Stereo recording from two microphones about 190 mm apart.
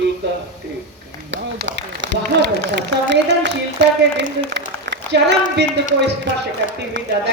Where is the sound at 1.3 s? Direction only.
70° right (ahead or behind).